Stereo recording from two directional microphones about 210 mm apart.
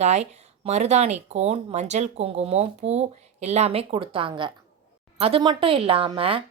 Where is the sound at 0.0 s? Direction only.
30° right (ahead or behind).